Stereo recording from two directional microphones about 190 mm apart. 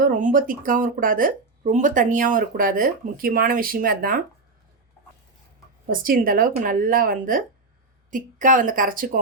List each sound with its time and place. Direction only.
0.0 s speech: 45° right (ahead or behind)
5.9 s speech: 45° right (ahead or behind)